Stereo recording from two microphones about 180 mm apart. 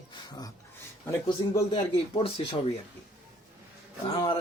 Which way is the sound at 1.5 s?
30° left (ahead or behind).